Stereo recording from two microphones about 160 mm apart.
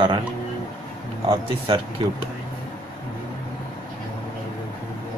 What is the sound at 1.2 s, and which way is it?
Speech, 35° right (ahead or behind).